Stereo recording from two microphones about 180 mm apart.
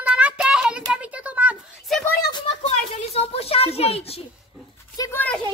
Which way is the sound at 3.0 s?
35° left (ahead or behind).